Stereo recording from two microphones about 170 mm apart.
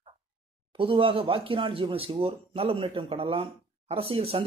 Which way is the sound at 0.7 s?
30° right (ahead or behind).